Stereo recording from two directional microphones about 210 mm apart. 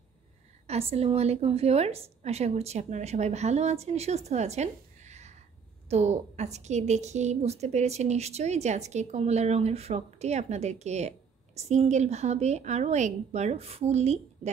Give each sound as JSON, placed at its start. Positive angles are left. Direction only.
{"t": 0.7, "sound": "a woman's voice", "side_deg": -30}